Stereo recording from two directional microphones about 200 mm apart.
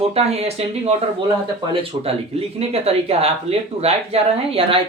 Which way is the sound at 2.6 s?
30° right (ahead or behind).